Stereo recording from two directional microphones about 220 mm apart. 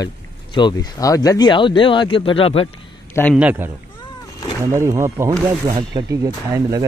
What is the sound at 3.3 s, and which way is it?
Speech, 5° right (ahead or behind).